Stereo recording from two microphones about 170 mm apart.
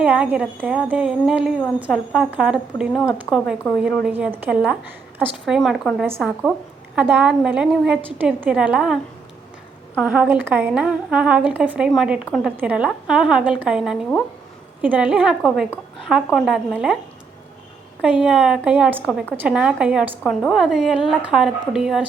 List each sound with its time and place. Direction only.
0.0 s a woman's voice: 10° right (ahead or behind)
5.5 s a woman's voice: centre (ahead or behind)
10.0 s a woman's voice: 10° right (ahead or behind)
18.0 s a woman's voice: 5° right (ahead or behind)